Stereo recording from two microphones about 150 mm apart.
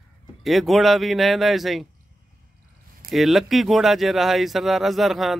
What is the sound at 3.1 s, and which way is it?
Speech, centre (ahead or behind).